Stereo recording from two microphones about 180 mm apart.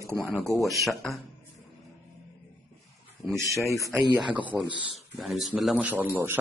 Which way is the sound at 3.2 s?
Centre (ahead or behind).